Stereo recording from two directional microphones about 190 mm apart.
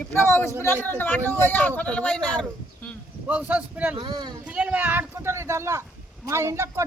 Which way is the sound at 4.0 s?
25° right (ahead or behind).